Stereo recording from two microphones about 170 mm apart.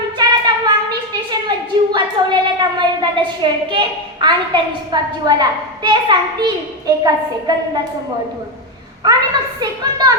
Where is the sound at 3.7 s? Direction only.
25° right (ahead or behind).